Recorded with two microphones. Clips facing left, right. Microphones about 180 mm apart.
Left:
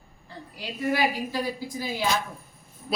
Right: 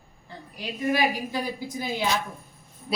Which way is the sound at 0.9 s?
20° right (ahead or behind).